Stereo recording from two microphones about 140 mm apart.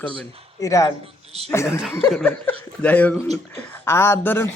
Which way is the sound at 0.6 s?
25° left (ahead or behind).